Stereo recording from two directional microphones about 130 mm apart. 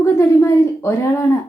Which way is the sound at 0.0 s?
20° left (ahead or behind).